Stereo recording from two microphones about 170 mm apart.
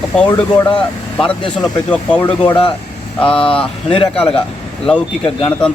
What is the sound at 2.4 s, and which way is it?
A man's voice, 30° left (ahead or behind).